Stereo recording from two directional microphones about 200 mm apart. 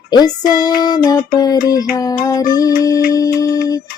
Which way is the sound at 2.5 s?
20° left (ahead or behind).